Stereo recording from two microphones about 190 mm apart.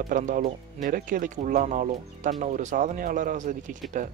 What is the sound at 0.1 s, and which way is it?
A man's voice, 45° right (ahead or behind).